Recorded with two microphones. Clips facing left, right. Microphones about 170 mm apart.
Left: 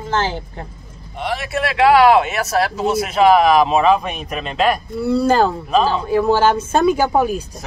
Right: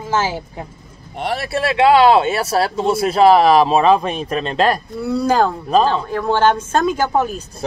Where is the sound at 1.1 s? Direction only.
40° right (ahead or behind).